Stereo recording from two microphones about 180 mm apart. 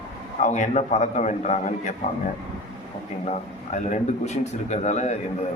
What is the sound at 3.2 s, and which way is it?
A man's voice, 40° left (ahead or behind).